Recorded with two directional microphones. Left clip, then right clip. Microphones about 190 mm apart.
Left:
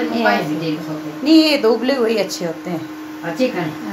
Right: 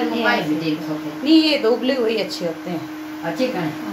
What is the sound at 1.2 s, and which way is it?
A woman's voice, 25° left (ahead or behind).